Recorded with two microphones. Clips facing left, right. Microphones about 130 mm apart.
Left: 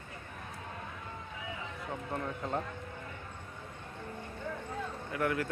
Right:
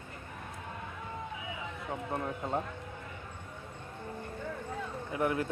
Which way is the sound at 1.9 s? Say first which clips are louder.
Right 2 dB; 20° right (ahead or behind).